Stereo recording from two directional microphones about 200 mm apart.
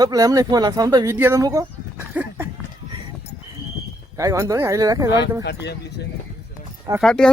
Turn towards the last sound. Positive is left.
turn(degrees=5)  # may be behind; listen again after turning